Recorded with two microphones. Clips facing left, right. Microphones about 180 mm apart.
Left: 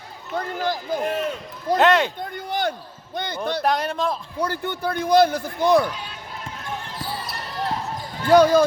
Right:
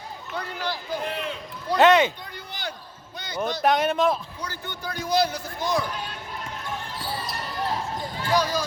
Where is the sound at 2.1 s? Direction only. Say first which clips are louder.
Left 12 dB; 50° left (ahead or behind).